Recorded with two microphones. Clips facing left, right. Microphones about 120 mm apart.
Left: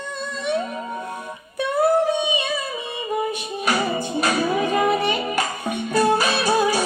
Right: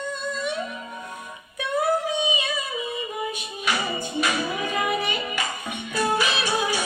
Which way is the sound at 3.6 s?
40° left (ahead or behind).